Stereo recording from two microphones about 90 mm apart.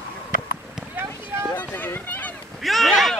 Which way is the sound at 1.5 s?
20° left (ahead or behind).